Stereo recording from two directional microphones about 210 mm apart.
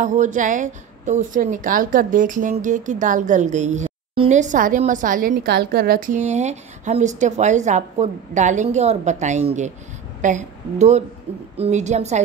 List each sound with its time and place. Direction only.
0.0 s a woman's voice: 35° right (ahead or behind)